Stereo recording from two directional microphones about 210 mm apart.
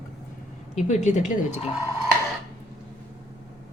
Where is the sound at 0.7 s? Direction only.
35° left (ahead or behind).